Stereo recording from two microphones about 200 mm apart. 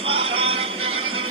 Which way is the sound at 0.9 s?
90° right.